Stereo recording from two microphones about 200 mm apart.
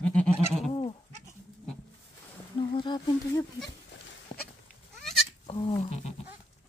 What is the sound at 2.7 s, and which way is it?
Speech, 20° left (ahead or behind).